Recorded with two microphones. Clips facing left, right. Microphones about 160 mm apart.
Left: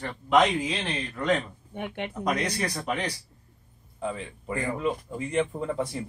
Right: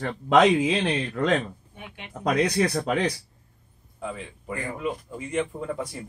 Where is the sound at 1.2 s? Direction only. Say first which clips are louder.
Right 1 dB; 65° right (ahead or behind).